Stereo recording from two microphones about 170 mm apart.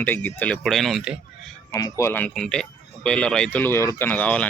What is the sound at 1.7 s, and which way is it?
Speech, 20° left (ahead or behind).